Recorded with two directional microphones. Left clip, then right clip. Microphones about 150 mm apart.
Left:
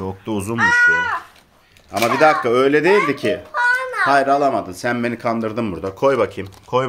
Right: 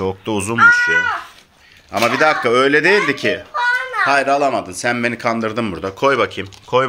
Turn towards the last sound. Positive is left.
turn(degrees=0)  # may be behind; listen again after turning